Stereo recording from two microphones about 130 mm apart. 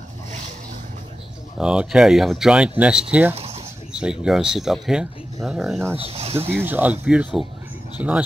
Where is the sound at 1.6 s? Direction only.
5° right (ahead or behind).